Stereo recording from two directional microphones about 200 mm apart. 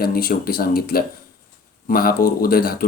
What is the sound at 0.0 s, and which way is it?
Speech, 50° left (ahead or behind).